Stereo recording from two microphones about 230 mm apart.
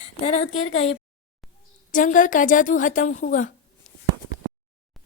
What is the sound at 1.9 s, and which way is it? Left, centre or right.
A woman's voice, left.